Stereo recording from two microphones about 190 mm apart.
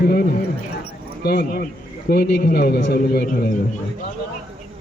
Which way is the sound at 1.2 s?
55° left (ahead or behind).